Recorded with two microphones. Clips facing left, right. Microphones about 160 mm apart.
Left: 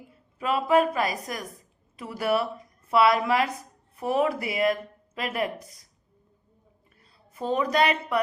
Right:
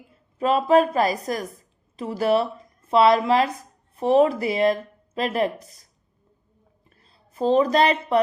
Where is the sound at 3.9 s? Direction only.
25° right (ahead or behind).